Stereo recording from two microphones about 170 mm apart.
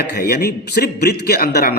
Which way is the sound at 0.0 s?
70° left (ahead or behind).